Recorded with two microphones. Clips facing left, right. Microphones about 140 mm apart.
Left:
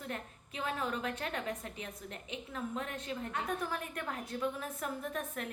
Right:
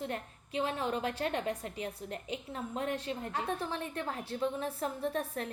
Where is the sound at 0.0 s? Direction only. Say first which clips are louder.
Right 4 dB; 30° right (ahead or behind).